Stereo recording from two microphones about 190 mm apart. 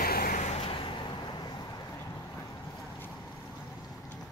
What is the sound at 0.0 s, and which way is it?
Vehicle, 50° left (ahead or behind).